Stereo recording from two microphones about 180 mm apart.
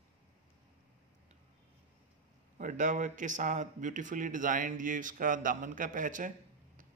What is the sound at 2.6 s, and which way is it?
Speech, 45° right (ahead or behind).